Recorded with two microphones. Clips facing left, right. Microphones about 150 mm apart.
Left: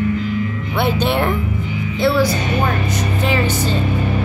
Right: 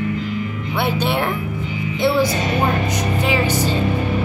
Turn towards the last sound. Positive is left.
turn(degrees=-10)  # may be behind; listen again after turning